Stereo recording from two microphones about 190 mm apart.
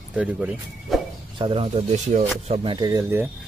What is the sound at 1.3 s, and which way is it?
Speech, 25° right (ahead or behind).